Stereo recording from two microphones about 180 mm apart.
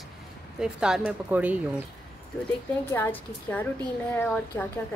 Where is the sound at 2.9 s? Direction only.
10° left (ahead or behind).